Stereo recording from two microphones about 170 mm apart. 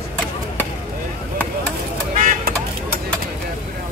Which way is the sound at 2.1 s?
50° right (ahead or behind).